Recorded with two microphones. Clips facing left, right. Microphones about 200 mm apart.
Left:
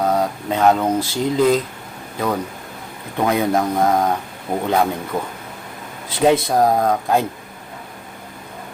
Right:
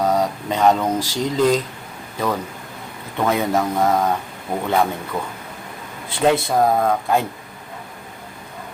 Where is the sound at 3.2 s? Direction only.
10° left (ahead or behind).